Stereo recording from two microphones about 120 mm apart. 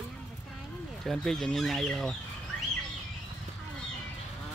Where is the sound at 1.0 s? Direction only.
5° left (ahead or behind).